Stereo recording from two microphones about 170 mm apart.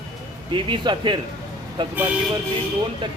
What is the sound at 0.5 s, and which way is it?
Speech, 30° right (ahead or behind).